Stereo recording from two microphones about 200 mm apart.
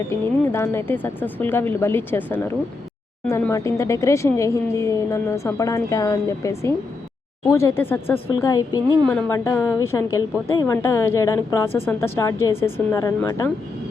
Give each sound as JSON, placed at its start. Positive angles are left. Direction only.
{"t": 0.1, "sound": "speech", "side_deg": 10}